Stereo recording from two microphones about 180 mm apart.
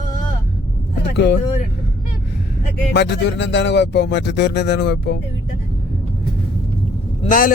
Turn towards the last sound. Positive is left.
turn(degrees=50)  # may be behind; listen again after turning